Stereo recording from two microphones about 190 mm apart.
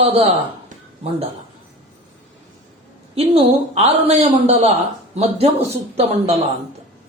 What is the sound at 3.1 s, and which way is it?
Speech, 35° right (ahead or behind).